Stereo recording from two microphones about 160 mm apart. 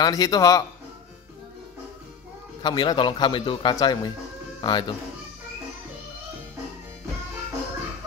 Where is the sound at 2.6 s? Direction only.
30° left (ahead or behind).